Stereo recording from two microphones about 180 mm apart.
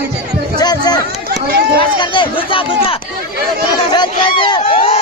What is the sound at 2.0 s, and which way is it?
Speech, 25° left (ahead or behind).